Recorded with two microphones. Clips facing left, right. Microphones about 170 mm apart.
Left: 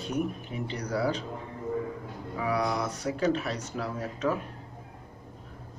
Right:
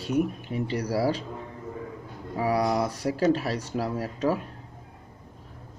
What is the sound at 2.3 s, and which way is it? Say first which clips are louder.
Speech: right 4 dB; 30° right (ahead or behind).